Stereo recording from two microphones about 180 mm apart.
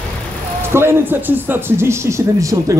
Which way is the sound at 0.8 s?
15° right (ahead or behind).